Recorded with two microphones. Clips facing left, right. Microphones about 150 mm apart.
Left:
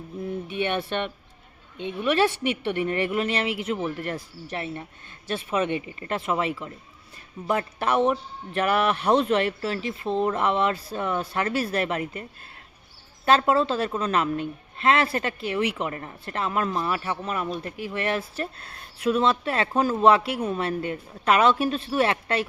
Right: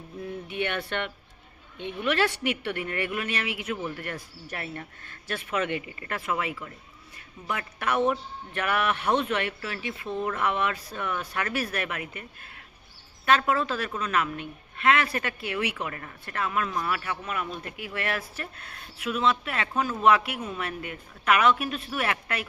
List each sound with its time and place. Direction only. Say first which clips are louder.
0.5 s a woman's voice: left 3 dB; 20° left (ahead or behind)
8.6 s a woman's voice: left 4 dB; 35° left (ahead or behind)
13.2 s a woman's voice: left 4 dB; 30° left (ahead or behind)